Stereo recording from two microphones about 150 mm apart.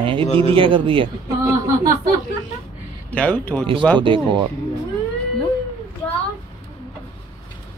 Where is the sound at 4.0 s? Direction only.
35° right (ahead or behind).